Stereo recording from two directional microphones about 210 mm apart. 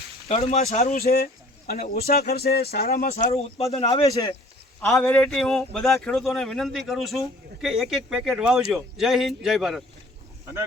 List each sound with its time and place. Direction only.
0.3 s speech: 30° left (ahead or behind)
1.1 s a sound: 45° left (ahead or behind)
2.0 s speech: 50° left (ahead or behind)
3.1 s a man's voice: 35° left (ahead or behind); by 4.4 s 15° left (ahead or behind)
4.9 s speech: 5° left (ahead or behind)